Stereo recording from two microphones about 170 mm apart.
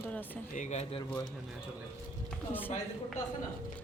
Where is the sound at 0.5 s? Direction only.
45° left (ahead or behind).